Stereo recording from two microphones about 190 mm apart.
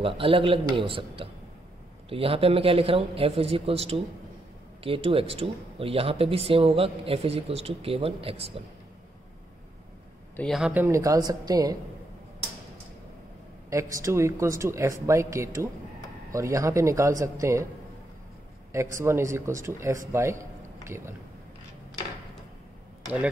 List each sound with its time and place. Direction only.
0.0 s speech: 30° right (ahead or behind)
10.3 s speech: centre (ahead or behind); by 11.7 s 20° right (ahead or behind)
13.7 s speech: 15° right (ahead or behind)
18.7 s speech: 15° right (ahead or behind)